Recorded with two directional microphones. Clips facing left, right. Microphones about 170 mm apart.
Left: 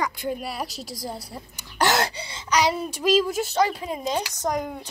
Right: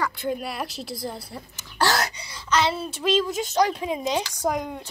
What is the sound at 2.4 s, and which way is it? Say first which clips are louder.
Speech: left 1 dB; 15° left (ahead or behind).